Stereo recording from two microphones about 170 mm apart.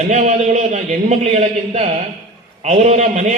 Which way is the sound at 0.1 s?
45° right (ahead or behind).